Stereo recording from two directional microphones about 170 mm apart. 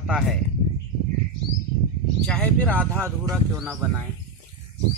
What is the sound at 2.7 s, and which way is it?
Speech, 15° right (ahead or behind).